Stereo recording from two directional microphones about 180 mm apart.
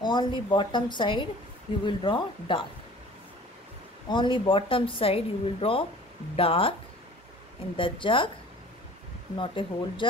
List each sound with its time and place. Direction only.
0.0 s a woman's voice: 25° left (ahead or behind)
4.1 s a woman's voice: 25° left (ahead or behind)
7.7 s a woman's voice: 30° left (ahead or behind)
9.4 s a woman's voice: 25° left (ahead or behind)